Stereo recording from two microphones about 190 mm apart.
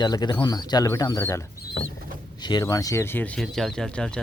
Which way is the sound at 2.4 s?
20° left (ahead or behind).